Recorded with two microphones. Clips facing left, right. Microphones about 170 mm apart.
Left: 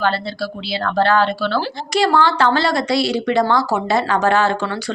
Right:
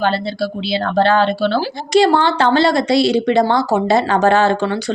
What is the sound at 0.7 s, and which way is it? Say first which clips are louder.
A woman's voice: right 2 dB; 25° right (ahead or behind).